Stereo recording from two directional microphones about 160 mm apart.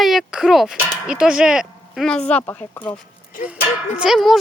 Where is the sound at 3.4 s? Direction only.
10° right (ahead or behind).